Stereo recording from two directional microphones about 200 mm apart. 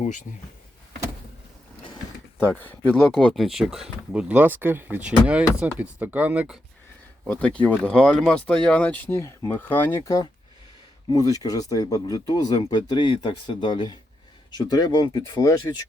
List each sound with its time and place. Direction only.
0.0 s speech: 40° left (ahead or behind)
2.4 s speech: 10° left (ahead or behind); by 6.6 s 5° right (ahead or behind)
7.3 s speech: 5° left (ahead or behind)